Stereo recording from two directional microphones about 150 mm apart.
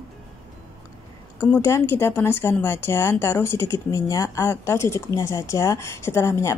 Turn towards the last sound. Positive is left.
turn(degrees=20)  # may be behind; listen again after turning